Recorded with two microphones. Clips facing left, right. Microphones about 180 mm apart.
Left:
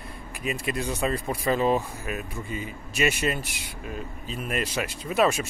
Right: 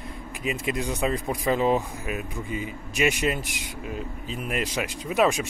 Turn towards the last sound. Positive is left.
turn(degrees=-15)  # may be behind; listen again after turning